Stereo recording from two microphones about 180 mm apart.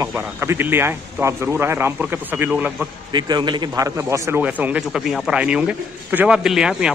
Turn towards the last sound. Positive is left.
turn(degrees=-5)  # may be behind; listen again after turning